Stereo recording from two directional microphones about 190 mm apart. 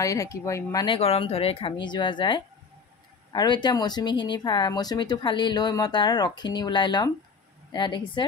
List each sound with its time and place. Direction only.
0.0 s speech: 15° left (ahead or behind)